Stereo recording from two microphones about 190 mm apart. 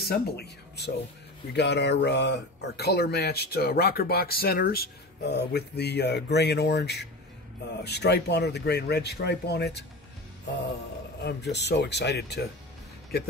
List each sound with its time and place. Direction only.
0.1 s speech: 60° left (ahead or behind)
11.2 s speech: 65° left (ahead or behind)